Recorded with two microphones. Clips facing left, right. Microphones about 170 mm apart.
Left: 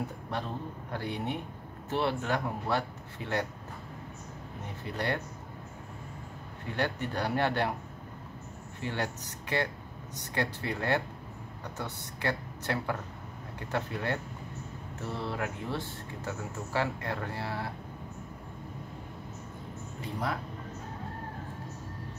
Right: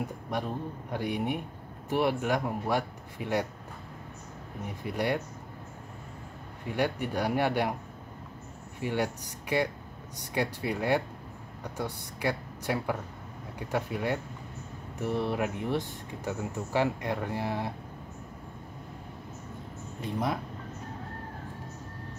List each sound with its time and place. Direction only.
0.3 s speech: 15° right (ahead or behind)
4.8 s speech: 10° right (ahead or behind)
6.7 s speech: 10° right (ahead or behind)
8.8 s speech: 10° right (ahead or behind)